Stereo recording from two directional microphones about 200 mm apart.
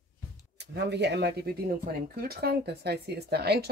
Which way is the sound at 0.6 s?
55° right (ahead or behind).